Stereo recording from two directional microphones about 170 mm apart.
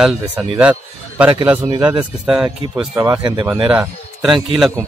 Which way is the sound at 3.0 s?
25° right (ahead or behind).